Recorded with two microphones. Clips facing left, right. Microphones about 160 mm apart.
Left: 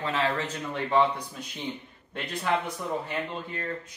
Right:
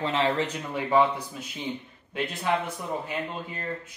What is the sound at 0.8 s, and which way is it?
Speech, 10° right (ahead or behind).